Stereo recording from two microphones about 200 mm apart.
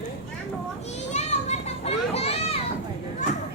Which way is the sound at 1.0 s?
35° left (ahead or behind).